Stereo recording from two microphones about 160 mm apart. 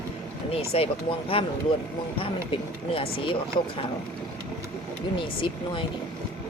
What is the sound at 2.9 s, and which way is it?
Speech, 35° left (ahead or behind).